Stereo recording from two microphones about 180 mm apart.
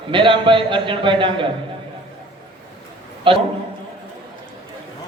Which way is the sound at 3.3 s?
30° right (ahead or behind).